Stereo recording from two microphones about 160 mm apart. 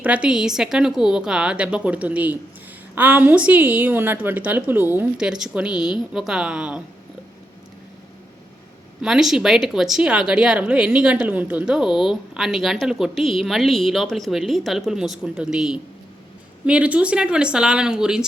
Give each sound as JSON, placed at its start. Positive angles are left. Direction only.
{"t": 0.0, "sound": "a woman's voice", "side_deg": -5}
{"t": 9.0, "sound": "a woman's voice", "side_deg": -5}